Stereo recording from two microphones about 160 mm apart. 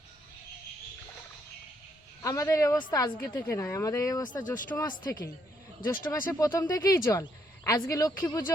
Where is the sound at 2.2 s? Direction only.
20° left (ahead or behind).